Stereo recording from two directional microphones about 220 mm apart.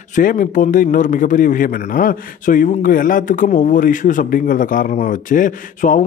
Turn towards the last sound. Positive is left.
turn(degrees=35)  # may be behind; listen again after turning